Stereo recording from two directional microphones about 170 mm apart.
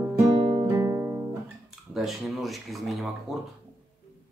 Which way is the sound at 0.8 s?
15° right (ahead or behind).